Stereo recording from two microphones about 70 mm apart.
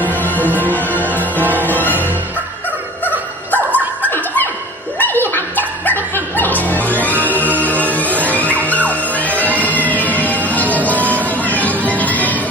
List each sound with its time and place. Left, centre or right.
0.0 s music: left
1.4 s music: right
1.7 s music: left
3.1 s dog: left
4.9 s music: left
9.7 s music: left